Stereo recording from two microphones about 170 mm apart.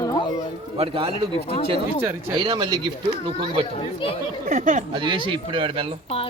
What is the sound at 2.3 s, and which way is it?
Speech, 25° right (ahead or behind).